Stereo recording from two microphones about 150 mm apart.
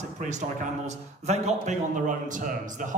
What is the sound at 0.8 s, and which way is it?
A man's voice, 50° right (ahead or behind).